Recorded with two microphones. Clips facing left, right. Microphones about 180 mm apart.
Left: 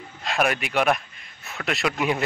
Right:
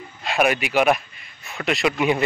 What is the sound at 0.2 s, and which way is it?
Speech, 5° right (ahead or behind).